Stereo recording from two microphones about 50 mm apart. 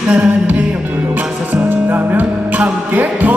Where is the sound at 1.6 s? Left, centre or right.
Right.